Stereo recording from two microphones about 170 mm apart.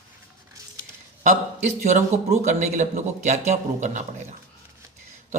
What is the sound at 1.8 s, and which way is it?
Speech, 45° right (ahead or behind).